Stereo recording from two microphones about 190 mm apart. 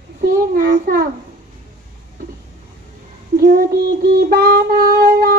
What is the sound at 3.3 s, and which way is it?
Child singing, 50° right (ahead or behind).